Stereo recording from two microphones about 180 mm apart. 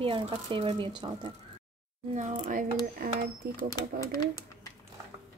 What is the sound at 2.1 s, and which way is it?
Speech, 40° right (ahead or behind).